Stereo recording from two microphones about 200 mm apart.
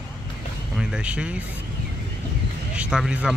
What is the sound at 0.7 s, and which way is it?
Speech, 5° right (ahead or behind).